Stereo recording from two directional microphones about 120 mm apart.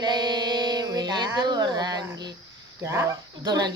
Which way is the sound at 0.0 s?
35° right (ahead or behind).